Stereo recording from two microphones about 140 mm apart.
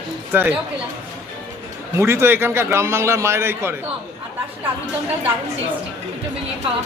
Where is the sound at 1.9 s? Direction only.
20° right (ahead or behind).